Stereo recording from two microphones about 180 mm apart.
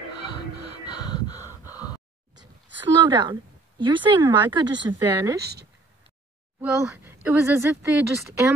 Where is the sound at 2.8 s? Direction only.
25° right (ahead or behind).